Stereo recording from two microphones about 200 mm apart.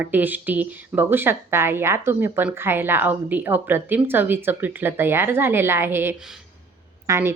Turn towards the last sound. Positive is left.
turn(degrees=-15)  # may be behind; listen again after turning